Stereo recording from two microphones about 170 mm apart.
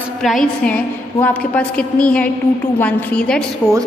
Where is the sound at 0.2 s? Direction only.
Centre (ahead or behind).